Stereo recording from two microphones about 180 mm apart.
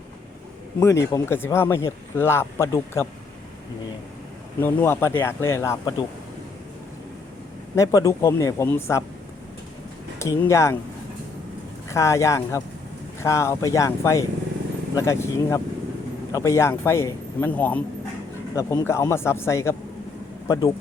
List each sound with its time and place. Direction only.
0.8 s speech: 15° left (ahead or behind)
4.6 s speech: 10° left (ahead or behind)
7.8 s speech: 15° left (ahead or behind)
10.2 s speech: 15° left (ahead or behind)
11.9 s speech: 15° left (ahead or behind)